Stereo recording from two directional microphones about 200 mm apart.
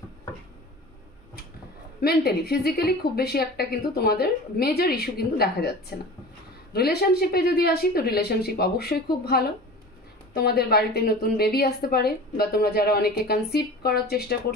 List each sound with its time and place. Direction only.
2.0 s a woman's voice: 50° left (ahead or behind)